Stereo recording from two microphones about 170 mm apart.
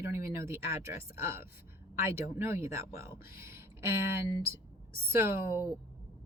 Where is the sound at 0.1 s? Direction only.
15° right (ahead or behind).